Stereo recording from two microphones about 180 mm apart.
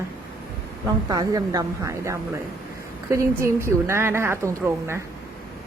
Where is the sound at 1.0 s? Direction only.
20° right (ahead or behind).